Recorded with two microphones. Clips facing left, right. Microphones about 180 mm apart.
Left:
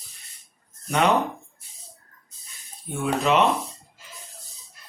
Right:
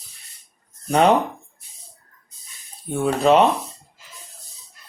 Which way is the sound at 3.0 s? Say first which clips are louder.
Right 5 dB; 35° right (ahead or behind).